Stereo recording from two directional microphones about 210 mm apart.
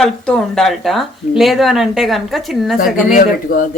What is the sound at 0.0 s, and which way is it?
Frying, 5° left (ahead or behind).